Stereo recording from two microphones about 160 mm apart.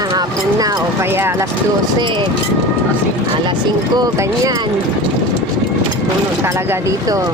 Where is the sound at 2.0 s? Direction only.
30° right (ahead or behind).